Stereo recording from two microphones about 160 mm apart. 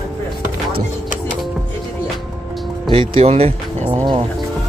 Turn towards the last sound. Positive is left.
turn(degrees=-35)  # may be behind; listen again after turning